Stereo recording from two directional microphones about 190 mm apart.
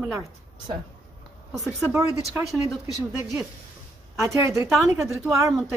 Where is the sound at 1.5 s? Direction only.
15° right (ahead or behind).